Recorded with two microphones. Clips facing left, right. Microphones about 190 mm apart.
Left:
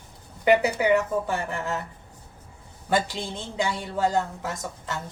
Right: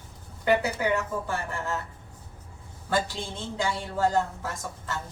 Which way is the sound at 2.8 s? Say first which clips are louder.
Left 3 dB; 20° left (ahead or behind).